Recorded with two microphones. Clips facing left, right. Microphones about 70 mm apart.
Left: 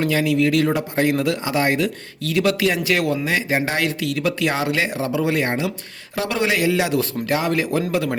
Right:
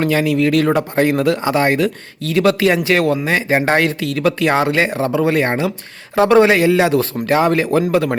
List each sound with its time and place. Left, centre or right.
0.0 s speech: right